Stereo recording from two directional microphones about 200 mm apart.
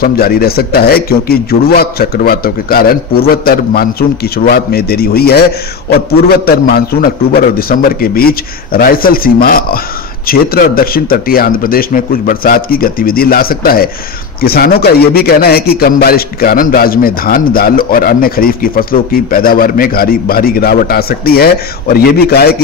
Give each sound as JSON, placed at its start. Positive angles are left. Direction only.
{"t": 0.0, "sound": "a man's voice", "side_deg": 50}